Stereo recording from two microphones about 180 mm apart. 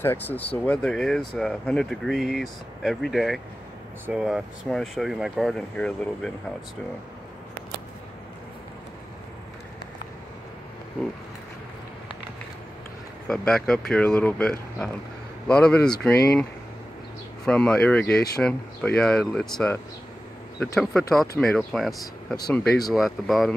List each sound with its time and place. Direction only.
0.0 s speech: 10° left (ahead or behind)
13.3 s speech: 5° left (ahead or behind)
17.5 s speech: 5° left (ahead or behind)
20.8 s speech: centre (ahead or behind)